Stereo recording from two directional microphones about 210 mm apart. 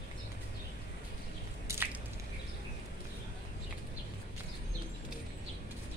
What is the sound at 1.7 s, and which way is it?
Squish, 10° right (ahead or behind).